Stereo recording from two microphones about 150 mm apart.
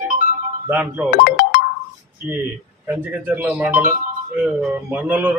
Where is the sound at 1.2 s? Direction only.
70° left (ahead or behind).